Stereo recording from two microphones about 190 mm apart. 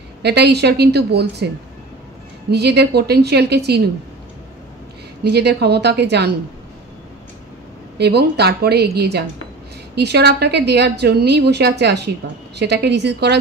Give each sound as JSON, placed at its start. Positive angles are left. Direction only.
{"t": 0.2, "sound": "a woman's voice", "side_deg": -60}
{"t": 2.5, "sound": "a woman's voice", "side_deg": -60}
{"t": 5.3, "sound": "a woman's voice", "side_deg": -60}
{"t": 8.0, "sound": "a woman's voice", "side_deg": -60}